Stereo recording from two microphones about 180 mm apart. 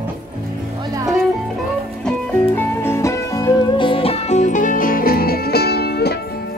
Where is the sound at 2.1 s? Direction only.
10° left (ahead or behind); by 6.1 s 60° left (ahead or behind).